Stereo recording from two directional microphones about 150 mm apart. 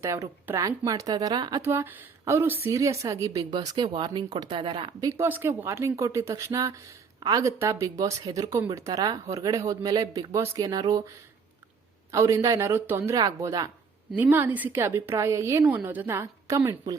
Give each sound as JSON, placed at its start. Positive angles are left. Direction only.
{"t": 0.0, "sound": "speech", "side_deg": -20}
{"t": 5.2, "sound": "speech", "side_deg": -15}
{"t": 12.1, "sound": "speech", "side_deg": -20}
{"t": 14.2, "sound": "a woman's voice", "side_deg": -10}